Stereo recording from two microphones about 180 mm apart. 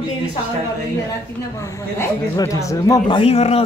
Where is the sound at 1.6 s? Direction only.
20° left (ahead or behind).